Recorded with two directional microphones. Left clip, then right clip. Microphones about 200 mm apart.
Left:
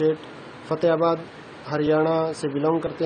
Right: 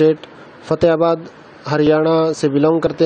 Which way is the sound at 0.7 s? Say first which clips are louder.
Right 7 dB; 30° right (ahead or behind).